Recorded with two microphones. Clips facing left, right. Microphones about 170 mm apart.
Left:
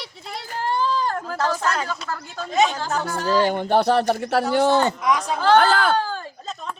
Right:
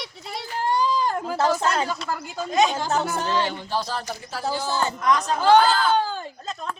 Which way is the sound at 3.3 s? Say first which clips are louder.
Left 7 dB; 50° left (ahead or behind).